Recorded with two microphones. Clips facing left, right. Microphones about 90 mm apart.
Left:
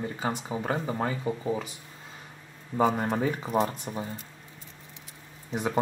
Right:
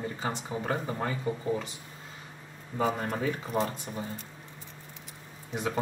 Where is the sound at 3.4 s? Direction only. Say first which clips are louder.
Left 3 dB; 10° left (ahead or behind).